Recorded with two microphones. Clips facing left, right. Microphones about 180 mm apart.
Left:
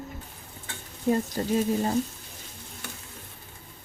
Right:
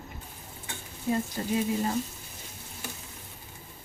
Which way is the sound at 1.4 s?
40° left (ahead or behind).